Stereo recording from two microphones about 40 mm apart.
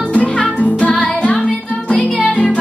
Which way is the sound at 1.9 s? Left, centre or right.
Left.